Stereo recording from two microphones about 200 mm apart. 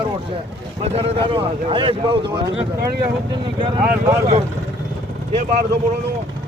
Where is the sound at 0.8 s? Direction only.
30° right (ahead or behind).